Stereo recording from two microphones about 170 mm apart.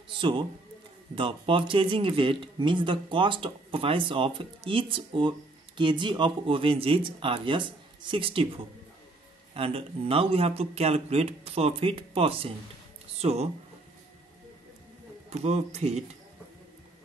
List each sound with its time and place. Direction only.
0.1 s a man's voice: 30° right (ahead or behind)
9.5 s speech: 35° right (ahead or behind)
15.2 s speech: 40° right (ahead or behind)